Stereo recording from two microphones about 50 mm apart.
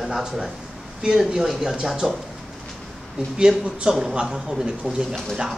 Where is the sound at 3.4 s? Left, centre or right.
Centre.